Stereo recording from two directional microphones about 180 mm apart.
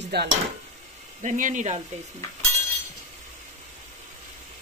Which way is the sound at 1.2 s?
45° right (ahead or behind).